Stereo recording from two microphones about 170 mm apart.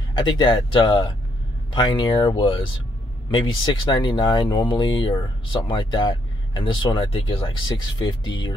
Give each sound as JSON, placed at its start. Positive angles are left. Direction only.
{"t": 0.1, "sound": "speech", "side_deg": 25}